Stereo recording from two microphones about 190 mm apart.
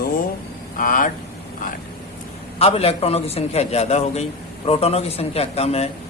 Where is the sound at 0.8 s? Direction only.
45° left (ahead or behind).